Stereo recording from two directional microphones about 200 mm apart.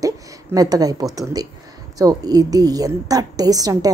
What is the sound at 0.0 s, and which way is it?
A woman's voice, 15° right (ahead or behind).